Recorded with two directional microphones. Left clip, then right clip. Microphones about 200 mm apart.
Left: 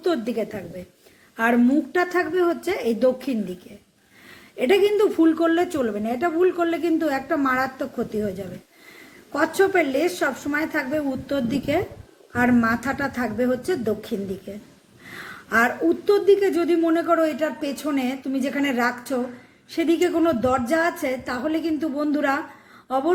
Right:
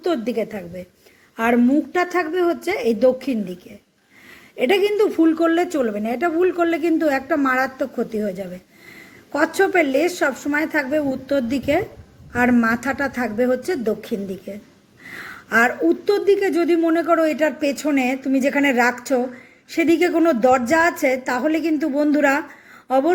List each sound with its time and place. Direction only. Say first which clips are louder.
0.0 s a woman's voice: right 2 dB; 15° right (ahead or behind)